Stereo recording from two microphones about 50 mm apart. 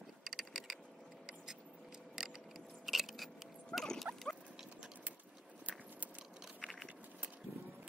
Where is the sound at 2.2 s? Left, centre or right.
Centre.